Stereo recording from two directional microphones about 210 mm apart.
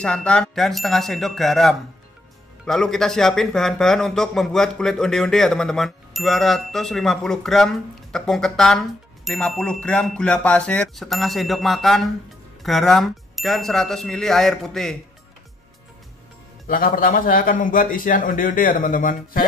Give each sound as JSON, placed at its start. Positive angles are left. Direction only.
{"t": 0.0, "sound": "speech", "side_deg": 5}
{"t": 16.6, "sound": "a man's voice", "side_deg": 40}